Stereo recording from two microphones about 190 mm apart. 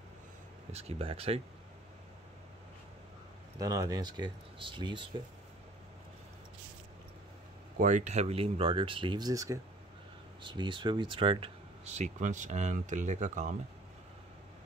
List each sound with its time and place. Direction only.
0.7 s speech: 30° right (ahead or behind)
3.5 s speech: 20° right (ahead or behind)
7.8 s speech: 40° right (ahead or behind)